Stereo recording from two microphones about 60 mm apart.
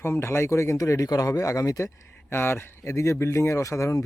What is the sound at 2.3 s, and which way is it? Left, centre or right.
Speech, left.